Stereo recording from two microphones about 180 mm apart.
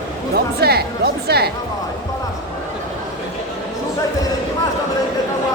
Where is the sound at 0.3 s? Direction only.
60° right (ahead or behind).